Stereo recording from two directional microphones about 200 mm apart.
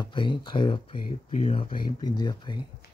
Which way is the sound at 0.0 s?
25° left (ahead or behind).